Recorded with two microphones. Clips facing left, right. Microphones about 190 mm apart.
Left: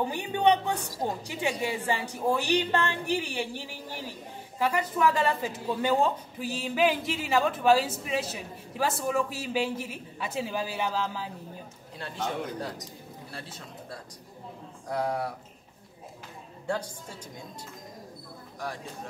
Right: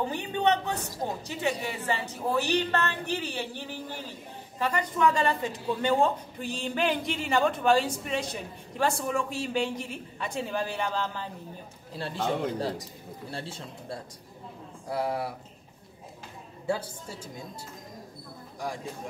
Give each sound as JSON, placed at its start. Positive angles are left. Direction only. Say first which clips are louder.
{"t": 0.1, "sound": "a woman's voice", "louder": "left 2 dB", "side_deg": 15}
{"t": 11.9, "sound": "a man's voice", "louder": "right 4 dB", "side_deg": -30}
{"t": 14.9, "sound": "speech", "louder": "even", "side_deg": -5}
{"t": 16.6, "sound": "a woman's voice", "louder": "right 1 dB", "side_deg": -5}